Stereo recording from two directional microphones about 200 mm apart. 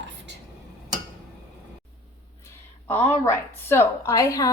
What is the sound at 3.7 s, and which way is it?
Speech, 15° left (ahead or behind).